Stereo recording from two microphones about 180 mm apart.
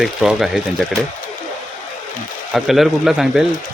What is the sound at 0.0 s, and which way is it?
Speech, centre (ahead or behind).